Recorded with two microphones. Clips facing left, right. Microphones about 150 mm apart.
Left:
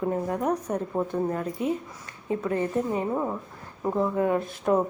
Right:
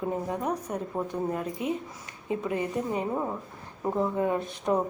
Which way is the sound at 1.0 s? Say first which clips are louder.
Left 3 dB; 15° right (ahead or behind).